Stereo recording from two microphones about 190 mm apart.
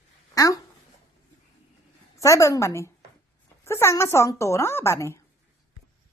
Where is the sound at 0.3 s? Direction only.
20° left (ahead or behind).